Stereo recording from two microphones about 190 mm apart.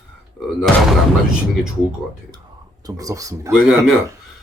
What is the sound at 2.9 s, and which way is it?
Speech, 20° right (ahead or behind).